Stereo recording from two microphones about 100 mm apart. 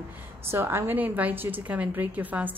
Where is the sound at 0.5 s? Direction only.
25° right (ahead or behind).